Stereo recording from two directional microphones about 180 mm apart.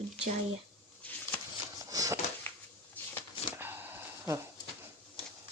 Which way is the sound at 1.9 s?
20° right (ahead or behind).